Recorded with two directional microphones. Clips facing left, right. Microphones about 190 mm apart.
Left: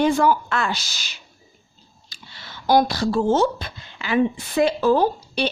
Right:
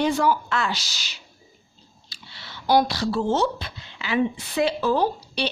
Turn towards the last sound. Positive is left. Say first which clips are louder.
# left 3 dB
turn(degrees=50)  # may be behind; listen again after turning